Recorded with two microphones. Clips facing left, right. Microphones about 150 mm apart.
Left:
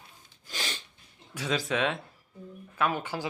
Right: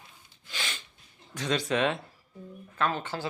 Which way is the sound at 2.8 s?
10° left (ahead or behind).